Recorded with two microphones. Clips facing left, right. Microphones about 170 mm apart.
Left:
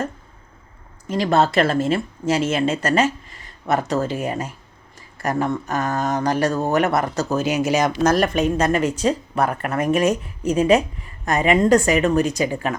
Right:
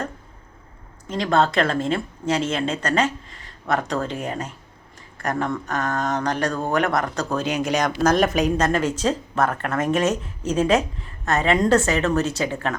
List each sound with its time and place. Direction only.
1.0 s speech: 5° left (ahead or behind)